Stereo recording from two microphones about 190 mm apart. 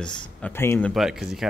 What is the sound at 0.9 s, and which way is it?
Speech, centre (ahead or behind).